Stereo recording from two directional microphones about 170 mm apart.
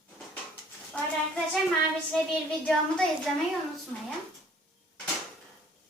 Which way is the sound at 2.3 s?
Centre (ahead or behind).